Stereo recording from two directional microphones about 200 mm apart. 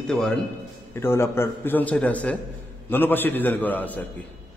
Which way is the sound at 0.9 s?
10° left (ahead or behind).